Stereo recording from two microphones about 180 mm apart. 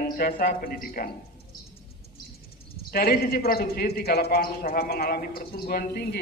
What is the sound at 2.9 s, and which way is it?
A man's voice, 60° left (ahead or behind).